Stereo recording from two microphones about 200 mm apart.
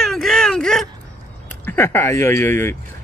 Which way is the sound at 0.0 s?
Centre (ahead or behind).